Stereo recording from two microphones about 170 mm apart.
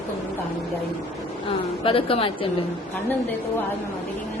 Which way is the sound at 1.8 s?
35° left (ahead or behind).